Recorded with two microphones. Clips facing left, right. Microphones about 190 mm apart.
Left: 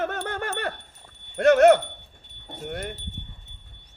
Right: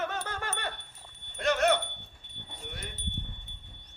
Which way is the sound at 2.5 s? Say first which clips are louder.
Left 11 dB; 50° left (ahead or behind).